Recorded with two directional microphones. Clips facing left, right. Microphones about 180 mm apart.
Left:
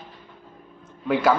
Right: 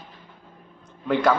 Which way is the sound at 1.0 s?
5° left (ahead or behind).